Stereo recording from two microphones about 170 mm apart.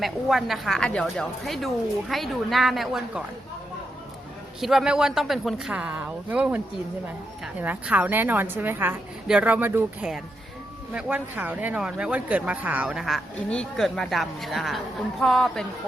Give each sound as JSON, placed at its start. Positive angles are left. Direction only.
{"t": 0.0, "sound": "speech", "side_deg": 0}
{"t": 4.6, "sound": "a woman's voice", "side_deg": 0}